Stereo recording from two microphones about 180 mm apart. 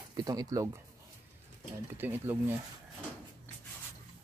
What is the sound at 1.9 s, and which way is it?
Speech, 10° right (ahead or behind).